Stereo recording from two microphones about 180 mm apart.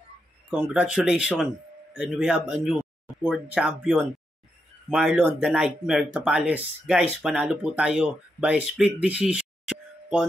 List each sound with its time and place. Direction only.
0.5 s speech: 5° right (ahead or behind)